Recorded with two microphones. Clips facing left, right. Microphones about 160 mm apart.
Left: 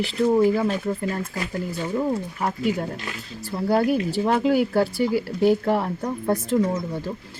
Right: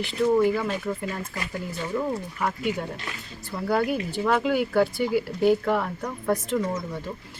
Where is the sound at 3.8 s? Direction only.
Centre (ahead or behind).